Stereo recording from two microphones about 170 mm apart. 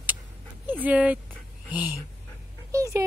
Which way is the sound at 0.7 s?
10° right (ahead or behind).